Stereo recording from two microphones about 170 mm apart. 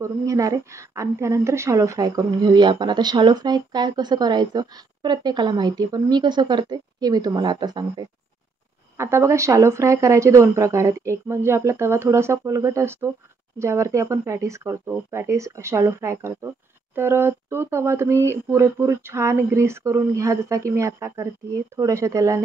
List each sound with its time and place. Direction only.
0.0 s a woman's voice: 20° right (ahead or behind)